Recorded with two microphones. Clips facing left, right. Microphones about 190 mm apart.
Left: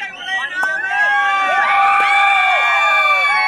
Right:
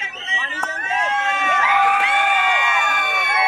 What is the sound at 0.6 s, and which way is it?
Crowd, 65° left (ahead or behind).